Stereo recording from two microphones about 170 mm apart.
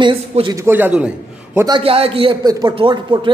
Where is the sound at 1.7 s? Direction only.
35° right (ahead or behind).